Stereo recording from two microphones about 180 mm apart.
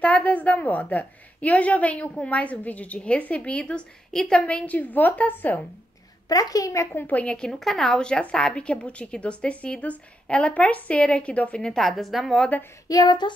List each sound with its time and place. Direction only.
0.0 s speech: 10° left (ahead or behind)
6.2 s speech: 20° left (ahead or behind)
12.8 s a sound: 20° left (ahead or behind)